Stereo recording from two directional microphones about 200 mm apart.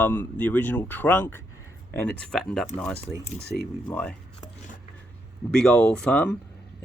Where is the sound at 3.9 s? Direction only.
10° left (ahead or behind).